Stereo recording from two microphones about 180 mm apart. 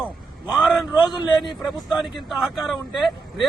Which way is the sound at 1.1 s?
25° left (ahead or behind).